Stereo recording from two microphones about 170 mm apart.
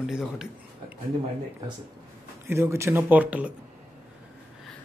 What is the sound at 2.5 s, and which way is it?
Speech, 15° right (ahead or behind).